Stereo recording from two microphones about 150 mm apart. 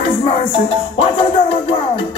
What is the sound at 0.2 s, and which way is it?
Music, 40° left (ahead or behind).